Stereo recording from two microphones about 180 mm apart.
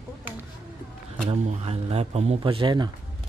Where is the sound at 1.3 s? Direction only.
35° right (ahead or behind).